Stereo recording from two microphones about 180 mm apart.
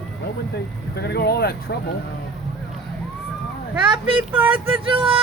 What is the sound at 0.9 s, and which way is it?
Speech, 65° left (ahead or behind).